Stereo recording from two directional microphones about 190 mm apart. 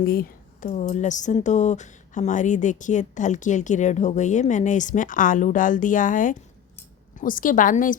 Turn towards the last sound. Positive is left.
turn(degrees=45)  # may be behind; listen again after turning